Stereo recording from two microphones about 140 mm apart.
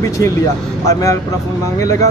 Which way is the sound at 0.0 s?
20° left (ahead or behind).